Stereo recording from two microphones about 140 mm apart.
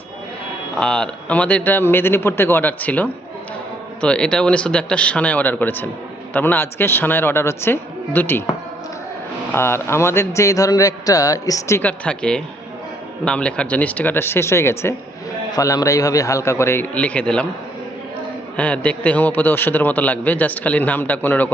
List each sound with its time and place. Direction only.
0.8 s a man's voice: 5° left (ahead or behind)
9.5 s a man's voice: 15° left (ahead or behind)
11.8 s a man's voice: 10° left (ahead or behind)
18.5 s a man's voice: 10° left (ahead or behind)